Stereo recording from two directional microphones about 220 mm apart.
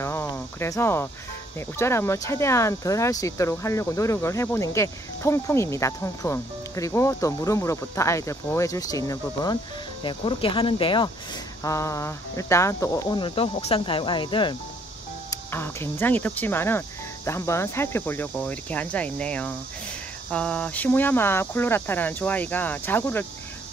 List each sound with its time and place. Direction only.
0.0 s cricket: 10° left (ahead or behind)
1.8 s speech: 10° left (ahead or behind)
15.2 s speech: 10° left (ahead or behind)